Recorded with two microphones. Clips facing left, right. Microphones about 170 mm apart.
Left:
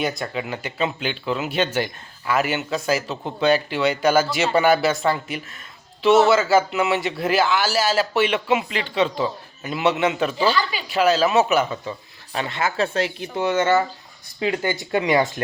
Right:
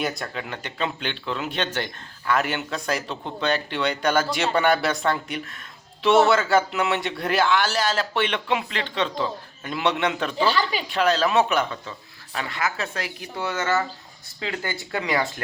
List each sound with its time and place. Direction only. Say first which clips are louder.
0.0 s speech: left 3 dB; centre (ahead or behind)
12.3 s speech: left 3 dB; 25° left (ahead or behind)